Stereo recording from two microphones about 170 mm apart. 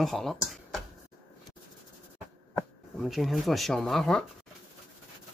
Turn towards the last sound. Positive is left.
turn(degrees=5)  # may be behind; listen again after turning